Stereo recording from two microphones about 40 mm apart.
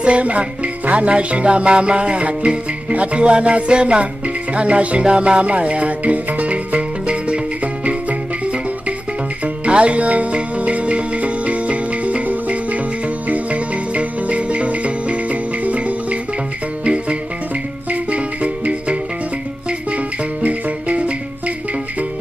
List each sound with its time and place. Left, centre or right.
0.0 s music: right